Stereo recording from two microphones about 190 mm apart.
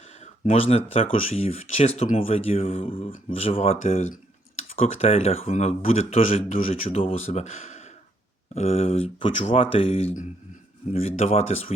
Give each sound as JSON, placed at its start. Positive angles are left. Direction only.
{"t": 0.5, "sound": "speech", "side_deg": 30}